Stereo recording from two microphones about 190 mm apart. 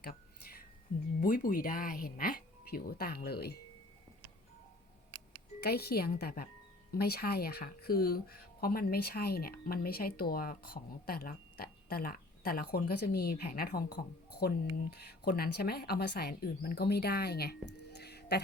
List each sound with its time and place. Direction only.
0.0 s a sound: 50° left (ahead or behind)
1.2 s speech: 45° left (ahead or behind)
5.5 s speech: 55° left (ahead or behind)